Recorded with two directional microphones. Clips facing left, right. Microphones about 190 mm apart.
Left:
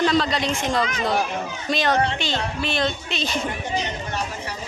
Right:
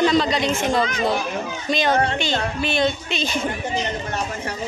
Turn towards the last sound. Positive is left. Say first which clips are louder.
# right 2 dB
turn(degrees=0)  # may be behind; listen again after turning